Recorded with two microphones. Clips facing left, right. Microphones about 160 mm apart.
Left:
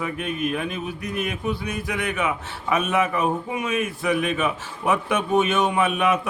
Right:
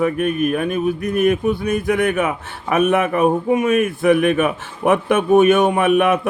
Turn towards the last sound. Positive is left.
turn(degrees=-55)  # may be behind; listen again after turning